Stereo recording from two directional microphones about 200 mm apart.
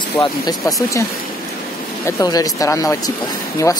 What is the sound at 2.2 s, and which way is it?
Speech, 20° left (ahead or behind).